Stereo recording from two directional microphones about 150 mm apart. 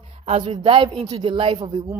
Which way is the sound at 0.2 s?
40° right (ahead or behind).